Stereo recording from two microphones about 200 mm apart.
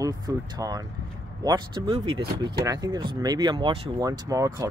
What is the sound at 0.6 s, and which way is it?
A man's voice, 20° right (ahead or behind).